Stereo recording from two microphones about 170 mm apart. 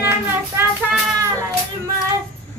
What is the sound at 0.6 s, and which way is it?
Music, 15° right (ahead or behind).